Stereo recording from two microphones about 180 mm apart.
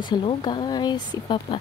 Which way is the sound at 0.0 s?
25° left (ahead or behind).